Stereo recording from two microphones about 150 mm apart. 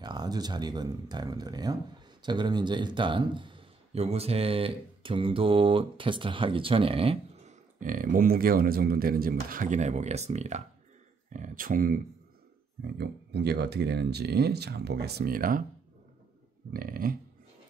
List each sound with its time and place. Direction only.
0.0 s a man's voice: 30° right (ahead or behind)
7.8 s speech: 65° right (ahead or behind)
12.8 s speech: 90° right; by 15.6 s 70° right (ahead or behind)
16.7 s speech: 70° right (ahead or behind)